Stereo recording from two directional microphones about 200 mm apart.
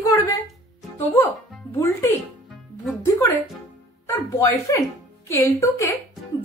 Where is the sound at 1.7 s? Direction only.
10° left (ahead or behind).